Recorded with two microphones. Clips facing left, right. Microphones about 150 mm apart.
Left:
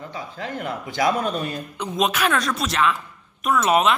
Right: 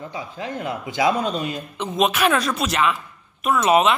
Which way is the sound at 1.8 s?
Centre (ahead or behind).